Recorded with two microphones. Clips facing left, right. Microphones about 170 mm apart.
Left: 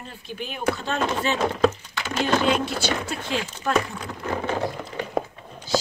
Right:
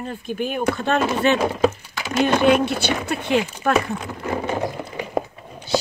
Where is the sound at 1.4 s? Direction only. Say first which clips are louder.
Right 2 dB; 10° right (ahead or behind).